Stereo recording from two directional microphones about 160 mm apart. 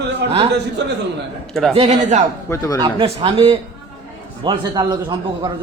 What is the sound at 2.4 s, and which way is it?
Speech, 20° left (ahead or behind).